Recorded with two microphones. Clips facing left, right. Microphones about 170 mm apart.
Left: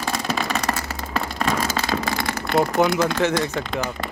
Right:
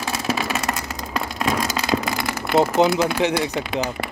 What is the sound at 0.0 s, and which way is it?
Vehicle, 5° right (ahead or behind).